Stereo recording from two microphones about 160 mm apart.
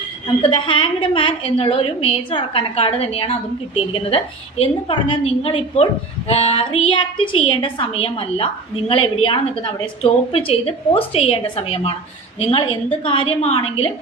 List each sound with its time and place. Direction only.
0.4 s a woman's voice: 30° left (ahead or behind)